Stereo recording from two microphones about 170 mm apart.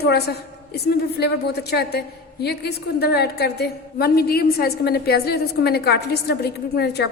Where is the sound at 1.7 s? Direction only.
70° left (ahead or behind).